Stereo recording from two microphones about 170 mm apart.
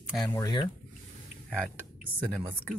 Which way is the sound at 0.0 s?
Centre (ahead or behind).